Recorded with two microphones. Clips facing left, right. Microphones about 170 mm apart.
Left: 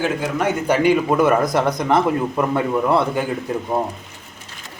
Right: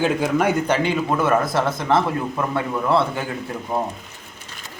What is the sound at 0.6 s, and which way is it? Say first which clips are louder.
Speech: left 4 dB; 10° left (ahead or behind).